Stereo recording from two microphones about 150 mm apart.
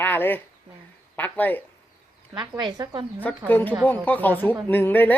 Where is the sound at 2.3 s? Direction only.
30° right (ahead or behind).